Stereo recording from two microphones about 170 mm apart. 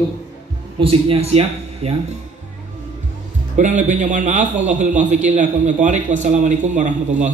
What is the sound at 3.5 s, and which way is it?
A man's voice, 45° right (ahead or behind).